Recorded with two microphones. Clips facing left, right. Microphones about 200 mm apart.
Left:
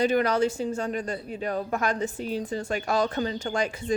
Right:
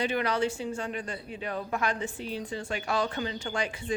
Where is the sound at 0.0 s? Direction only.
40° left (ahead or behind).